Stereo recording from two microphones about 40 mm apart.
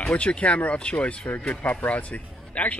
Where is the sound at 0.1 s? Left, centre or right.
Left.